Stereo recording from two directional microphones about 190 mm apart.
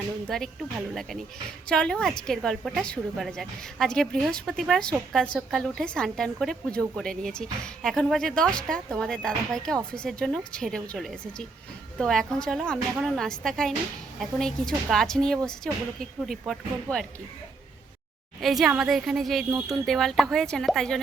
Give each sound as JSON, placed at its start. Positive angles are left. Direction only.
{"t": 0.3, "sound": "a woman's voice", "side_deg": 0}
{"t": 1.7, "sound": "a woman's voice", "side_deg": 5}
{"t": 18.3, "sound": "a woman's voice", "side_deg": 0}
{"t": 19.5, "sound": "speech", "side_deg": -15}
{"t": 19.8, "sound": "a woman's voice", "side_deg": 0}